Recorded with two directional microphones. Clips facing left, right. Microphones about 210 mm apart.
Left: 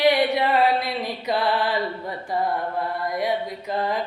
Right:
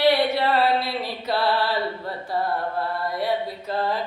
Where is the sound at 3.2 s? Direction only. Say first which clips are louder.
Left 1 dB; 15° left (ahead or behind).